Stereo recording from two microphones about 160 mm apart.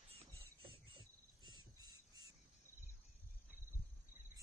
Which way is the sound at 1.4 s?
25° right (ahead or behind).